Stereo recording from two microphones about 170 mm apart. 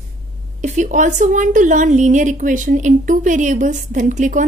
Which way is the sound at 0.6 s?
45° right (ahead or behind).